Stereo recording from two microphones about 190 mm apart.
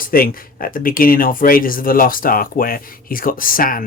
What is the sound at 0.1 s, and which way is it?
Speech, 50° left (ahead or behind).